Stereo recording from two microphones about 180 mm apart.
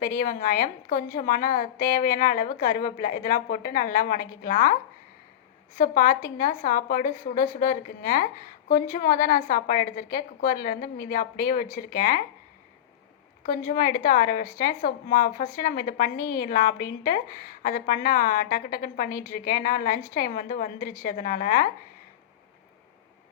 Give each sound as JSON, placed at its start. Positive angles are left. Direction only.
{"t": 0.0, "sound": "a woman's voice", "side_deg": 50}
{"t": 13.7, "sound": "a woman's voice", "side_deg": 55}